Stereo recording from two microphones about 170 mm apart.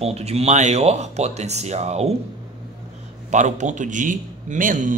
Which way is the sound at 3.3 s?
45° right (ahead or behind).